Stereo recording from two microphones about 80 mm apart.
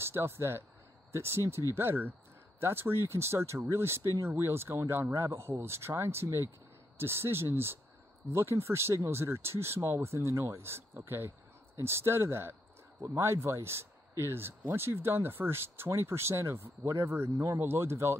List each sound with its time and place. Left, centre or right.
0.0 s speech: right